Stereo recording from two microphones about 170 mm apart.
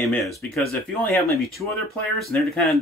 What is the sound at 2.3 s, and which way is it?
Speech, centre (ahead or behind).